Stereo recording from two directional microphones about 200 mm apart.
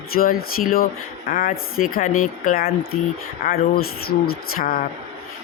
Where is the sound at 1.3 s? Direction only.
45° left (ahead or behind).